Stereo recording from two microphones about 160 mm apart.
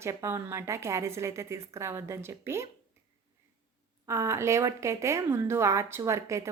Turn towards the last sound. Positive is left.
turn(degrees=-20)  # may be behind; listen again after turning